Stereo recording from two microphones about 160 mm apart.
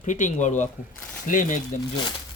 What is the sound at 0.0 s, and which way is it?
Speech, 50° left (ahead or behind).